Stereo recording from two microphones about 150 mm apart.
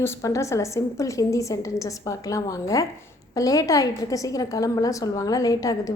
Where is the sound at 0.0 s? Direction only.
20° left (ahead or behind).